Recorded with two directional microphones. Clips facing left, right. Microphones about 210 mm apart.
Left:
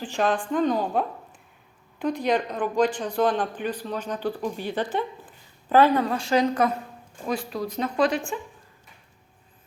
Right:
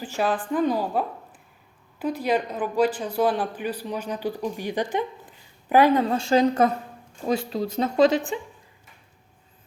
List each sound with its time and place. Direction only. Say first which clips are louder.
0.0 s speech: left 1 dB; 5° right (ahead or behind)